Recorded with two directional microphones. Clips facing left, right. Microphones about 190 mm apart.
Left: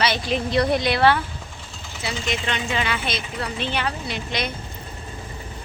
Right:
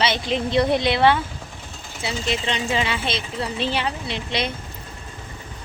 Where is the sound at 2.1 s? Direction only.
30° right (ahead or behind).